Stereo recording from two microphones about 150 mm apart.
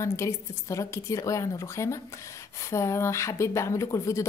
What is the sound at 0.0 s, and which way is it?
Speech, 20° left (ahead or behind).